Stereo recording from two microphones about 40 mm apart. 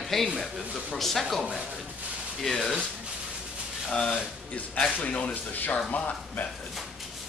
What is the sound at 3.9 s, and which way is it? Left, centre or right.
Speech, left.